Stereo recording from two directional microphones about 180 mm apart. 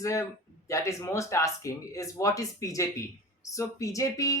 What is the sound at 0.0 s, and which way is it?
Speech, 15° left (ahead or behind).